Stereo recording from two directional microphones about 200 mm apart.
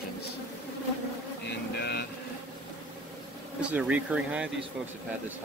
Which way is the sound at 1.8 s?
55° left (ahead or behind).